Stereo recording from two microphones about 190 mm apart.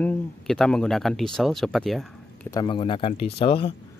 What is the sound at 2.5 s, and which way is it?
Speech, 20° left (ahead or behind).